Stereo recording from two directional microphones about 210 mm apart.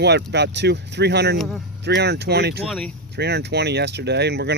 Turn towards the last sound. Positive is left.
turn(degrees=-50)  # may be behind; listen again after turning